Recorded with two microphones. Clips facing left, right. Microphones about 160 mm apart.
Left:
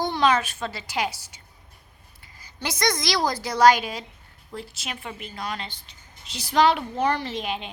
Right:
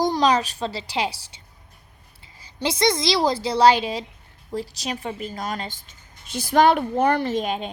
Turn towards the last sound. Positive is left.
turn(degrees=-45)  # may be behind; listen again after turning